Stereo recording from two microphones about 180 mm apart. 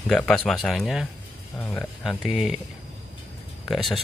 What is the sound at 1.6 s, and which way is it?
Speech, 10° left (ahead or behind).